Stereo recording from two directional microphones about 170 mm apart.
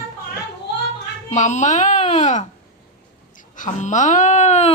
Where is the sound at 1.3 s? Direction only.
45° left (ahead or behind).